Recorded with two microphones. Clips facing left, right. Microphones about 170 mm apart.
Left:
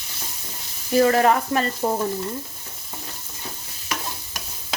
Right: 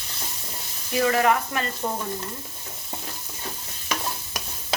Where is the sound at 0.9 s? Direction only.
35° left (ahead or behind).